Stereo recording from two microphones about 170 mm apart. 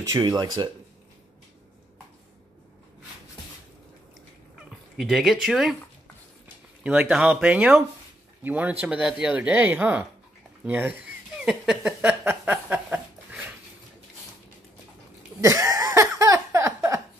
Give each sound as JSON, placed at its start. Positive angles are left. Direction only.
{"t": 0.0, "sound": "speech", "side_deg": -20}
{"t": 4.9, "sound": "speech", "side_deg": 0}
{"t": 6.8, "sound": "speech", "side_deg": -10}
{"t": 10.6, "sound": "a sound", "side_deg": -10}
{"t": 15.4, "sound": "laughter", "side_deg": -20}